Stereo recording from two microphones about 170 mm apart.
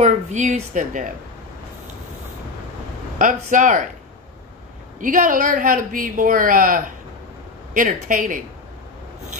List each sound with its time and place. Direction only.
0.0 s speech: 45° right (ahead or behind)
3.2 s speech: 50° right (ahead or behind)
5.0 s speech: 50° right (ahead or behind)